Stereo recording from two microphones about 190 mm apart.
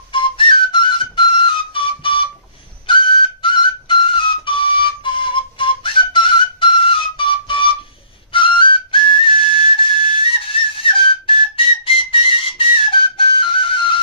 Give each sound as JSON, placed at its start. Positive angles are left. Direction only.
{"t": 0.1, "sound": "whistle", "side_deg": 25}
{"t": 2.9, "sound": "flute", "side_deg": 25}
{"t": 8.3, "sound": "whistle", "side_deg": 25}
{"t": 10.8, "sound": "whistle", "side_deg": 25}